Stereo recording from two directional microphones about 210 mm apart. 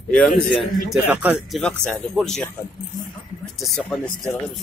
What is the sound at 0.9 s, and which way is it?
Speech, 5° right (ahead or behind).